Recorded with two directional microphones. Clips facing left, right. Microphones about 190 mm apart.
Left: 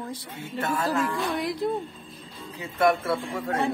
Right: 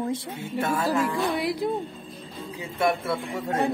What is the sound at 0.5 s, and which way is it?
Speech, 10° right (ahead or behind).